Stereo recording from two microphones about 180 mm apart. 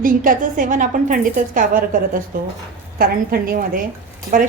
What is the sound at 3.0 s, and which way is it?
Speech, 55° right (ahead or behind).